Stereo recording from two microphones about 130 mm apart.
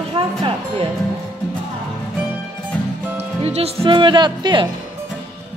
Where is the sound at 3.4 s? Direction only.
50° right (ahead or behind); by 4.6 s 35° right (ahead or behind).